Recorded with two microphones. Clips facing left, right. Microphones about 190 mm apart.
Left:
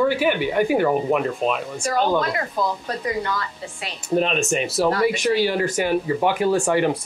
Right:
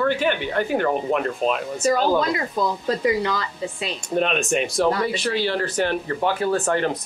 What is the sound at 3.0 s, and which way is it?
Speech, 90° right.